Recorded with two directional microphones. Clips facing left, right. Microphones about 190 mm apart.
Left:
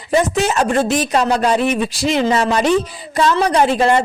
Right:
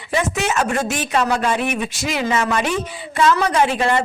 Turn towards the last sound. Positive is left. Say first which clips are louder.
# left 4 dB
turn(degrees=35)  # may be behind; listen again after turning